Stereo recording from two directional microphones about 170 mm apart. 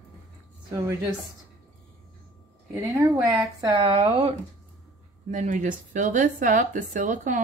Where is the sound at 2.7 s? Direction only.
20° right (ahead or behind).